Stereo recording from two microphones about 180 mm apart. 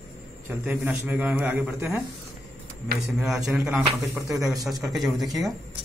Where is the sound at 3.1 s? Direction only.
Centre (ahead or behind).